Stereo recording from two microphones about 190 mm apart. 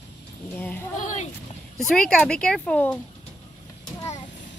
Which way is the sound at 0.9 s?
40° left (ahead or behind).